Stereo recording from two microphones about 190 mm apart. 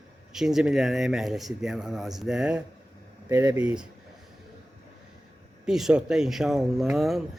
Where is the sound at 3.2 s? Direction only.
15° right (ahead or behind).